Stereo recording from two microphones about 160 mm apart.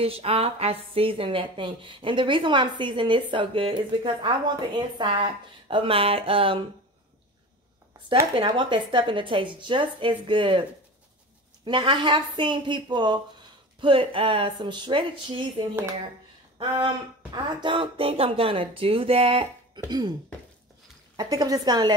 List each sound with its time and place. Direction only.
0.0 s a woman's voice: 35° right (ahead or behind)
8.4 s a woman's voice: 30° right (ahead or behind)
11.6 s a woman's voice: 30° right (ahead or behind)
16.5 s a woman's voice: 30° right (ahead or behind)
21.2 s a woman's voice: 25° right (ahead or behind)